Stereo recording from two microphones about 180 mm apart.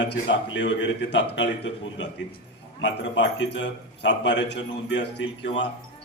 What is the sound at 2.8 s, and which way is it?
A man's voice, 80° left.